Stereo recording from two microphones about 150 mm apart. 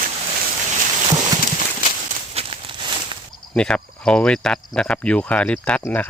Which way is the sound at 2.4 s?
40° right (ahead or behind).